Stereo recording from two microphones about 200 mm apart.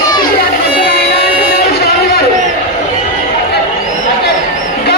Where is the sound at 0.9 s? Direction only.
55° left (ahead or behind).